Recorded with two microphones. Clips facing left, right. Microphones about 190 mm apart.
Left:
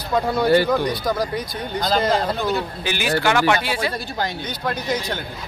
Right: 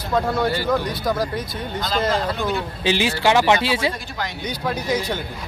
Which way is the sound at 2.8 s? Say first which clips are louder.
Right 5 dB; 25° right (ahead or behind).